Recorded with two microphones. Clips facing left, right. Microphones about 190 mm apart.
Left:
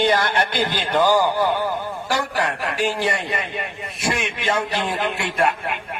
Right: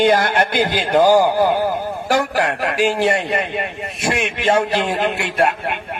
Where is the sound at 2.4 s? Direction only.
90° right.